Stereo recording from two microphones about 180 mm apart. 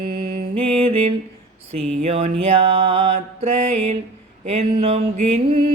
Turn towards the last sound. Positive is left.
turn(degrees=-35)  # may be behind; listen again after turning